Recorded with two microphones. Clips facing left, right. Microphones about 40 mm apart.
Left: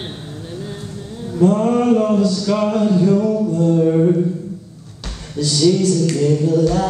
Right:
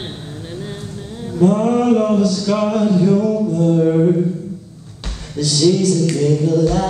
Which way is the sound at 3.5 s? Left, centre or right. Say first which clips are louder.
Even; right.